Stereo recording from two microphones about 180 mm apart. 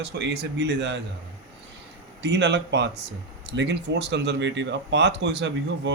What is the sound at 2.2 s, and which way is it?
Speech, 80° right.